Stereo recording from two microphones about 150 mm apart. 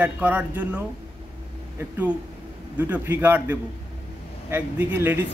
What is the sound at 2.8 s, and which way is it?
Speech, 10° right (ahead or behind).